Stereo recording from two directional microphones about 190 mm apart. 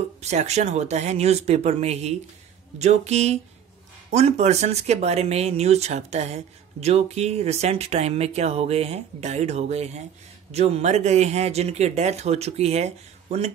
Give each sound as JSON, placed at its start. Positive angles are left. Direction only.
{"t": 0.2, "sound": "speech", "side_deg": -35}